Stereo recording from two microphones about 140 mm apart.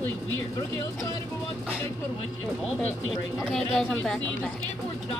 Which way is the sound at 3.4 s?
Centre (ahead or behind).